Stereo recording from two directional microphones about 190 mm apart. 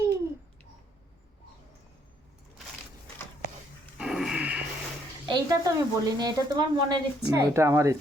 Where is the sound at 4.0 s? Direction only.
5° right (ahead or behind).